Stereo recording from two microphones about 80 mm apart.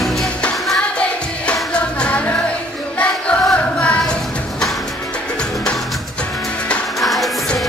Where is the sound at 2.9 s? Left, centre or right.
Centre.